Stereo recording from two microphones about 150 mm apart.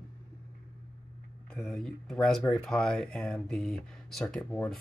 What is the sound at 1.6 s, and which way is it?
Speech, 5° left (ahead or behind).